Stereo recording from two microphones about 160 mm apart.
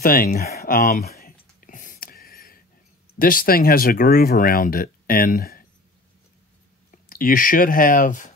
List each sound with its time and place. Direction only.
0.0 s speech: 65° left (ahead or behind)
1.1 s a sound: 65° left (ahead or behind)
3.2 s speech: 60° left (ahead or behind)
7.1 s speech: 60° left (ahead or behind)